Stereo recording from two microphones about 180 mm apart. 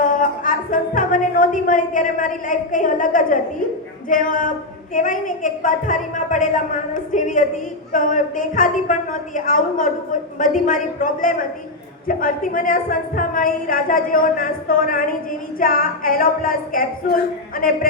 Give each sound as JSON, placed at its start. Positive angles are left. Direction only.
{"t": 0.0, "sound": "music", "side_deg": 45}
{"t": 4.1, "sound": "a woman's voice", "side_deg": 50}